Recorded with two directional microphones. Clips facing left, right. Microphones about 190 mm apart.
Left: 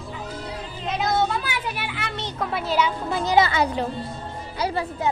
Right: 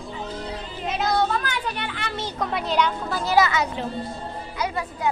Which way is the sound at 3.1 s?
20° left (ahead or behind).